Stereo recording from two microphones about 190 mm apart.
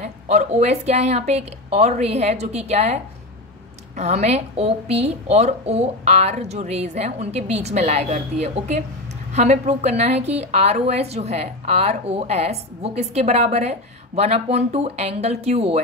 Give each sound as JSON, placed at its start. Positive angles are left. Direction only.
{"t": 0.0, "sound": "a woman's voice", "side_deg": -35}